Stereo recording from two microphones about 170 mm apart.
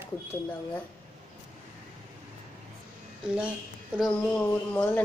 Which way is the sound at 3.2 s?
5° right (ahead or behind).